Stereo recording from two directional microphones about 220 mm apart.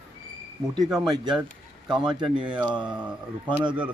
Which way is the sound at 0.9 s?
20° right (ahead or behind).